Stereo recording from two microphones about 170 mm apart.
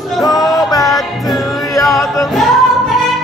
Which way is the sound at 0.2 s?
20° left (ahead or behind).